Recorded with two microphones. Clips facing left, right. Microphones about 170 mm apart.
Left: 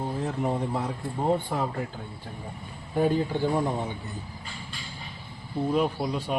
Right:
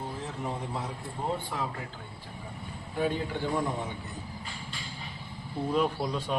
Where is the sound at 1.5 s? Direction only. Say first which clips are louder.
Left 5 dB; 45° left (ahead or behind).